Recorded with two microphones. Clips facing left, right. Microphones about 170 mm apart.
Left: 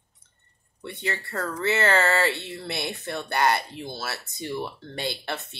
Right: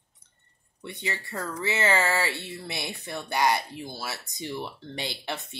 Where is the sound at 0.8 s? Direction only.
15° right (ahead or behind).